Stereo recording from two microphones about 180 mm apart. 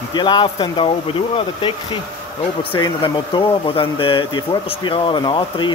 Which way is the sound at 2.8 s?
25° left (ahead or behind).